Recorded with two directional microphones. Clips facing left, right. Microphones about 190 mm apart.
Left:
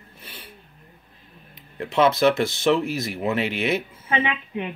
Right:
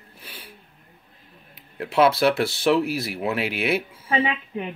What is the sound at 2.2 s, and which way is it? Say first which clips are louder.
Speech: left 1 dB; 10° right (ahead or behind).